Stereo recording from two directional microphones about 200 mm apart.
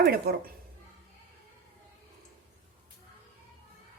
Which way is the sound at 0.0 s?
50° right (ahead or behind).